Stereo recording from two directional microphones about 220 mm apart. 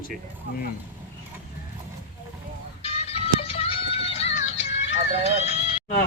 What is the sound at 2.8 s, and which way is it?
Music, 25° left (ahead or behind).